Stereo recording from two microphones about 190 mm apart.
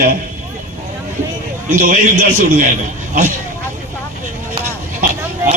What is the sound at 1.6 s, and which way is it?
A man's voice, 45° right (ahead or behind).